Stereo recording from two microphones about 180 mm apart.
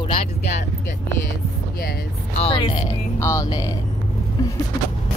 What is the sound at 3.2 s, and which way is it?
Music, 15° left (ahead or behind).